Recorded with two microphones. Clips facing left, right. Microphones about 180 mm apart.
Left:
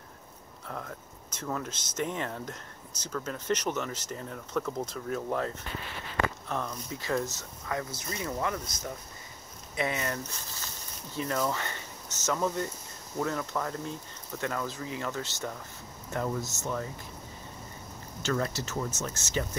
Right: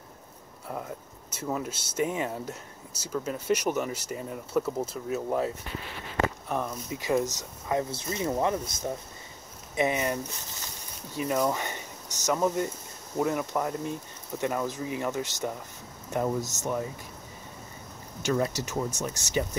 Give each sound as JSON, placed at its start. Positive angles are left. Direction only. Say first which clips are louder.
{"t": 0.7, "sound": "speech", "louder": "right 4 dB", "side_deg": -10}
{"t": 6.5, "sound": "speech", "louder": "right 3 dB", "side_deg": -10}
{"t": 18.2, "sound": "speech", "louder": "right 3 dB", "side_deg": -15}